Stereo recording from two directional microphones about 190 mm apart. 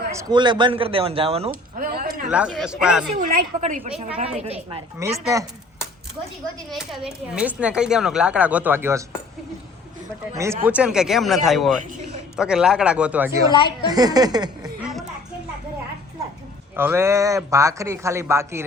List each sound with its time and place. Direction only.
0.1 s a man's voice: 20° right (ahead or behind)
1.5 s speech: 50° right (ahead or behind)
2.3 s speech: 5° right (ahead or behind)
3.2 s speech: 50° right (ahead or behind)
3.8 s speech: 30° right (ahead or behind)
4.9 s a man's voice: 15° right (ahead or behind)
6.7 s speech: centre (ahead or behind)
10.3 s a man's voice: 15° right (ahead or behind)
13.5 s a woman's voice: 25° left (ahead or behind)
13.9 s a man's voice: 20° right (ahead or behind)
16.7 s a man's voice: 10° right (ahead or behind)